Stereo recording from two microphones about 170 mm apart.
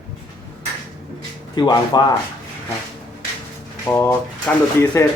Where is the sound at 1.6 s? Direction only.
25° left (ahead or behind).